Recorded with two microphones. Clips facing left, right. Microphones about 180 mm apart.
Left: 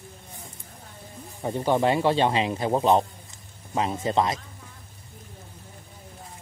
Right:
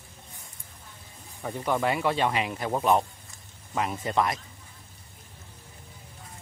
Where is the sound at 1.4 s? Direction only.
30° left (ahead or behind).